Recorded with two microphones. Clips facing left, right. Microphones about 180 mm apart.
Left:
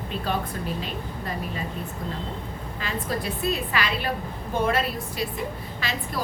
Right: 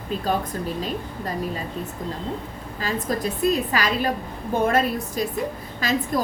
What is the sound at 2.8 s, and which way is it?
A woman's voice, 40° right (ahead or behind).